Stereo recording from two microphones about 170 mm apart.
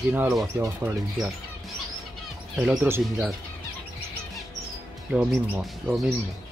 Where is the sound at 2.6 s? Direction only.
5° right (ahead or behind).